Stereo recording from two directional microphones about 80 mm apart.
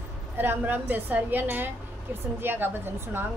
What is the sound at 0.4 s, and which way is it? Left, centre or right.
Mantra, right.